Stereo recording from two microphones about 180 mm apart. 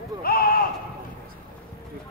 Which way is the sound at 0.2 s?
55° left (ahead or behind).